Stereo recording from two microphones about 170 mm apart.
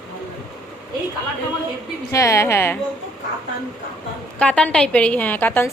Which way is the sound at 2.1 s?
15° left (ahead or behind).